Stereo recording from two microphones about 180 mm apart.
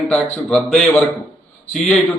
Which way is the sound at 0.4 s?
Centre (ahead or behind).